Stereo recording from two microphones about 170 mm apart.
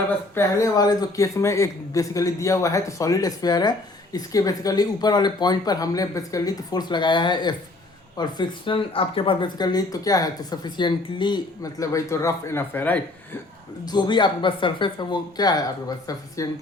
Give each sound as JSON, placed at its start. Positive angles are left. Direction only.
{"t": 0.3, "sound": "speech", "side_deg": 20}
{"t": 13.8, "sound": "speech", "side_deg": 25}